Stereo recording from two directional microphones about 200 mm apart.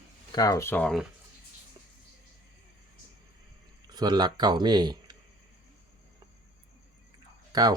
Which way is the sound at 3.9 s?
20° right (ahead or behind).